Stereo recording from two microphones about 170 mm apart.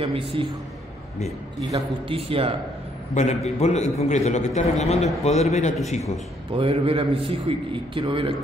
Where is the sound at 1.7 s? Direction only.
35° right (ahead or behind).